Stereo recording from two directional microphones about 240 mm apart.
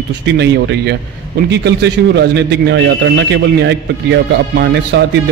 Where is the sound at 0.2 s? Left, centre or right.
Right.